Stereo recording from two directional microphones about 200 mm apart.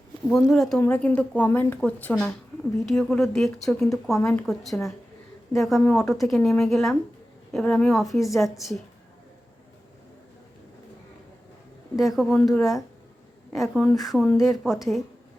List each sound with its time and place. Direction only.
0.3 s speech: centre (ahead or behind)
11.9 s speech: centre (ahead or behind)